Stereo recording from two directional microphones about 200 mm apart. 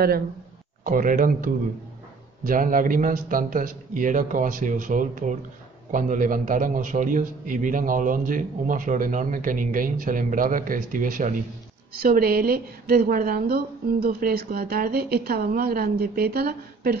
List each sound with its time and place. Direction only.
0.8 s a man's voice: 45° right (ahead or behind)